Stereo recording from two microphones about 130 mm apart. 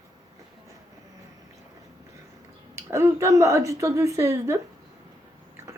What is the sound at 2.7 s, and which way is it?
Speech, 20° right (ahead or behind).